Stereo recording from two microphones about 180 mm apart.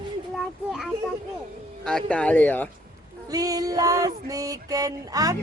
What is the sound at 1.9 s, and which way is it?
Speech, 5° left (ahead or behind).